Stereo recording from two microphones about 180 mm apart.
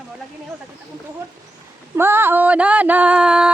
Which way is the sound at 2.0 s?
10° right (ahead or behind).